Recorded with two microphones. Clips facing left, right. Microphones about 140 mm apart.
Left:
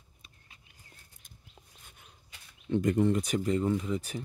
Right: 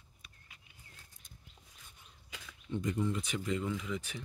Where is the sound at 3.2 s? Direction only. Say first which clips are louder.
Left 7 dB; 40° left (ahead or behind).